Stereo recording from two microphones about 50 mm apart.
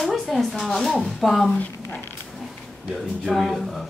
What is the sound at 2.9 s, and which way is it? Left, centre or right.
Speech, centre.